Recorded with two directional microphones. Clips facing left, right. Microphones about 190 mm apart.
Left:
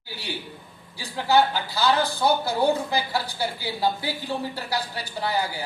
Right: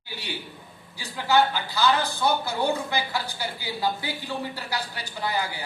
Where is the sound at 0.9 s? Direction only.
30° left (ahead or behind).